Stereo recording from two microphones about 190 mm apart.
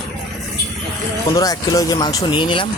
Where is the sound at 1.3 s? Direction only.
20° left (ahead or behind).